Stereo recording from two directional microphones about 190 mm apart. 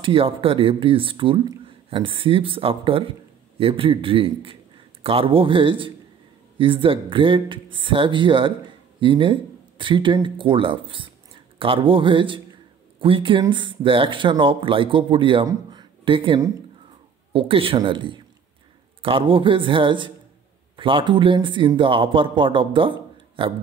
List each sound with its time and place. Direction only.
0.0 s speech: 30° right (ahead or behind)